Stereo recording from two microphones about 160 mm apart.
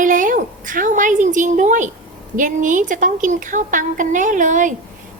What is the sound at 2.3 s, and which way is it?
A woman's voice, 55° right (ahead or behind).